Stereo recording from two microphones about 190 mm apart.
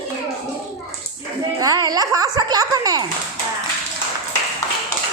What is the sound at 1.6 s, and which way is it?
Speech, 20° right (ahead or behind).